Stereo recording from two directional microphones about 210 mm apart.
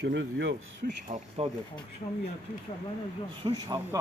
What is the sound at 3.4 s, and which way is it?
Speech, 20° right (ahead or behind).